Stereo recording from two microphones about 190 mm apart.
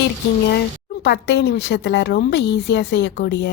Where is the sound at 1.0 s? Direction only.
65° left (ahead or behind).